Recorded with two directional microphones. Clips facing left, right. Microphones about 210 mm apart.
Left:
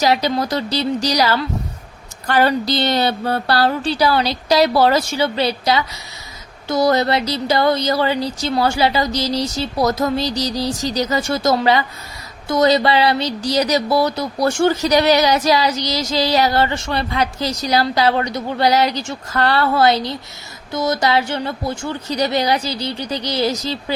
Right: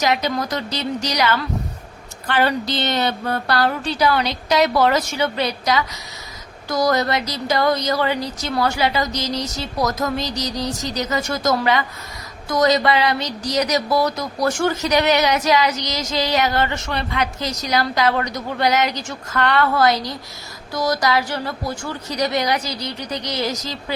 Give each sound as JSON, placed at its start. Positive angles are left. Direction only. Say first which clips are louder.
{"t": 0.0, "sound": "a woman's voice", "louder": "left 3 dB", "side_deg": 30}